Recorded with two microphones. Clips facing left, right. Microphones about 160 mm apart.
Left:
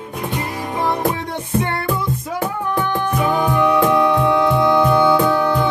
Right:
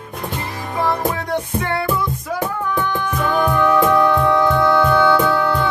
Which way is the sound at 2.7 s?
15° left (ahead or behind).